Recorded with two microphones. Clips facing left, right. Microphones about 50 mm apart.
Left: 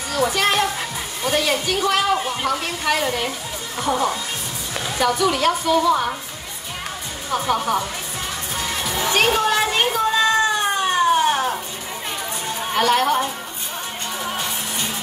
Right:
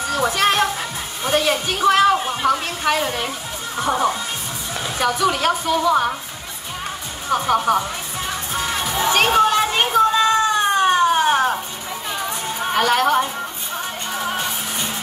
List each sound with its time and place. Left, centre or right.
1.2 s speech: centre
7.2 s speech: centre
8.5 s music: centre
8.8 s music: centre
9.7 s cat: centre
12.7 s speech: centre
14.1 s music: centre